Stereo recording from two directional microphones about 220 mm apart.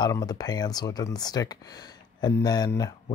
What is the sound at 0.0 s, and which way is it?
Speech, 15° left (ahead or behind).